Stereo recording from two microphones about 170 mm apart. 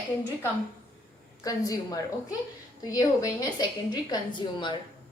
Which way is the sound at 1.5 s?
20° left (ahead or behind).